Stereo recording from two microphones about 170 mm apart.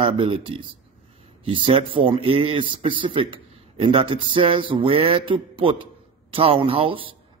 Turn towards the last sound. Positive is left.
turn(degrees=-30)  # may be behind; listen again after turning